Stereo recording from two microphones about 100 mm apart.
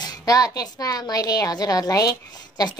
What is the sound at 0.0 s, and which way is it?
A woman's voice, 40° left (ahead or behind).